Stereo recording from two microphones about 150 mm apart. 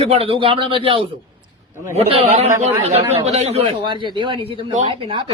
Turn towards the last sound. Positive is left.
turn(degrees=-35)  # may be behind; listen again after turning